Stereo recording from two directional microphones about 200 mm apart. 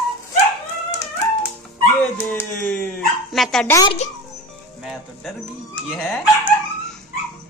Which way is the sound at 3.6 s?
15° left (ahead or behind).